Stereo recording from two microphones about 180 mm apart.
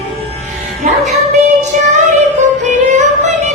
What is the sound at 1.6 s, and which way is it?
Female singing, 40° right (ahead or behind).